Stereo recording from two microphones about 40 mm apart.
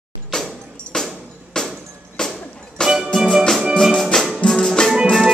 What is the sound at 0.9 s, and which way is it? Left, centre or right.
Music, centre.